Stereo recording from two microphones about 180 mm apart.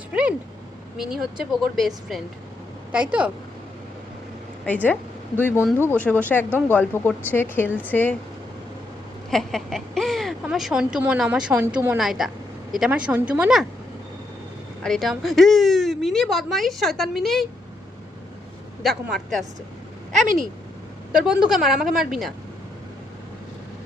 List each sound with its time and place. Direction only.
0.1 s a sound: 5° right (ahead or behind)
0.9 s speech: centre (ahead or behind)
4.6 s a woman's voice: 10° left (ahead or behind)
9.3 s speech: centre (ahead or behind)
14.8 s speech: centre (ahead or behind)
18.8 s speech: centre (ahead or behind)
20.2 s speech: 50° right (ahead or behind)
21.2 s speech: 5° right (ahead or behind)